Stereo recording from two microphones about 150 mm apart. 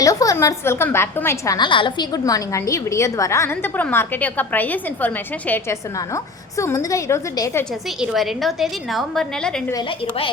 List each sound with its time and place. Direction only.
0.0 s a woman's voice: 20° left (ahead or behind)
1.5 s a woman's voice: 30° left (ahead or behind)
8.0 s a woman's voice: centre (ahead or behind)